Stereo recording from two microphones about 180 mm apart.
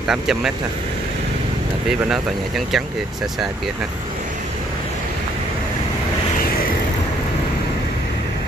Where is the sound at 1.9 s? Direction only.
5° right (ahead or behind).